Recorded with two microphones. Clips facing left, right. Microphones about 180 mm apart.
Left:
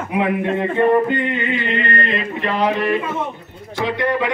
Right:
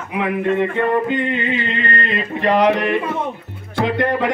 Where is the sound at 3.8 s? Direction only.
50° right (ahead or behind).